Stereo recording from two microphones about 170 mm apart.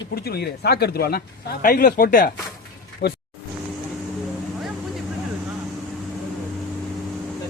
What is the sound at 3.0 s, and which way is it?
Speech, 70° left (ahead or behind).